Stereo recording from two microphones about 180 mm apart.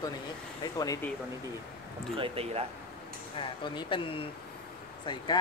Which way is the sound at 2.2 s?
35° right (ahead or behind).